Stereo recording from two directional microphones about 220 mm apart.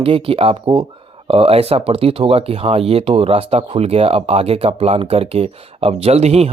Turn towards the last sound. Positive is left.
turn(degrees=-30)  # may be behind; listen again after turning